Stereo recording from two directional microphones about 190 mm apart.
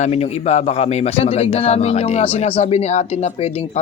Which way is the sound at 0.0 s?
35° left (ahead or behind).